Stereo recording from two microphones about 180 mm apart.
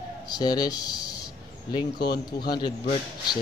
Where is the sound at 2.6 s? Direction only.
25° left (ahead or behind).